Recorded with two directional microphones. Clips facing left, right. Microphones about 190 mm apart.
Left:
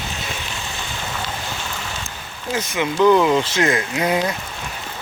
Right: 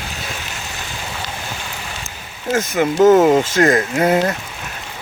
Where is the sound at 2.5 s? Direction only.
45° right (ahead or behind).